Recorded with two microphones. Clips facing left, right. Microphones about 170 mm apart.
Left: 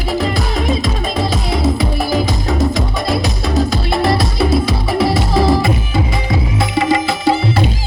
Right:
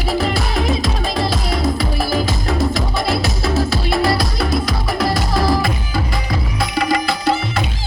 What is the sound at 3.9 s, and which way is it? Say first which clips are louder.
Music: left 2 dB; centre (ahead or behind).